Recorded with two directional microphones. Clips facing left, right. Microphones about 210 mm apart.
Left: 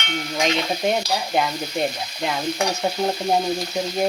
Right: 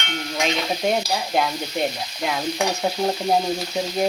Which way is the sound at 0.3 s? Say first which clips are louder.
Left 1 dB; centre (ahead or behind).